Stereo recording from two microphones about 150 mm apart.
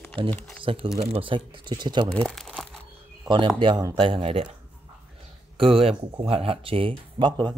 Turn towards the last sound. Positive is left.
turn(degrees=-30)  # may be behind; listen again after turning